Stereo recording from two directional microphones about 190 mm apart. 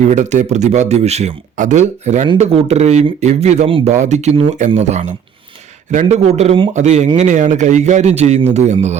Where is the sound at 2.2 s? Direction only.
30° right (ahead or behind).